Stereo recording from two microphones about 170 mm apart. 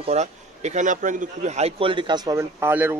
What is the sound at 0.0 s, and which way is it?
A man's voice, 40° right (ahead or behind).